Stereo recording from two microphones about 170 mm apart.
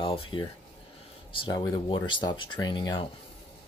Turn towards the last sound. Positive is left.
turn(degrees=25)  # may be behind; listen again after turning